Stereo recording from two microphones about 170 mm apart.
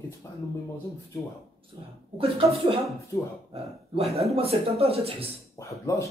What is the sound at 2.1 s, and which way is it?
Speech, 35° right (ahead or behind).